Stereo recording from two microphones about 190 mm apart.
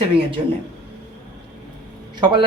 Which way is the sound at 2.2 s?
25° right (ahead or behind).